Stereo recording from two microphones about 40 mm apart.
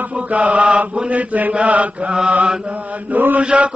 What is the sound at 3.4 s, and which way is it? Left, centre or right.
Mantra, right.